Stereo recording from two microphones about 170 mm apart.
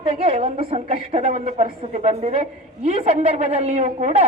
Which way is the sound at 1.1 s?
45° right (ahead or behind).